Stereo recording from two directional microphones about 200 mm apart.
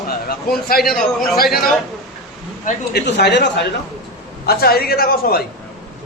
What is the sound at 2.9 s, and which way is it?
A man's voice, 55° left (ahead or behind).